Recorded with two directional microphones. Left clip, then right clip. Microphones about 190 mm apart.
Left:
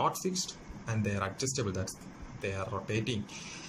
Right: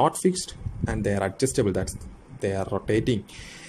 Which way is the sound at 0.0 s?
35° right (ahead or behind).